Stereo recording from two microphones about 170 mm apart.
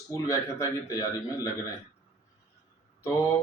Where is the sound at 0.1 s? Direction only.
20° left (ahead or behind).